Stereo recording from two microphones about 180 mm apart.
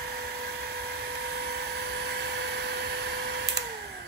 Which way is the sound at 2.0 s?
70° right (ahead or behind).